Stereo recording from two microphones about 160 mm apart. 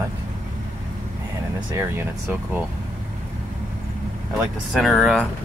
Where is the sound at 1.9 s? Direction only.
15° right (ahead or behind).